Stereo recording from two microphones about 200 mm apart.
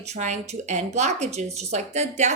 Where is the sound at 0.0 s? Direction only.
35° right (ahead or behind).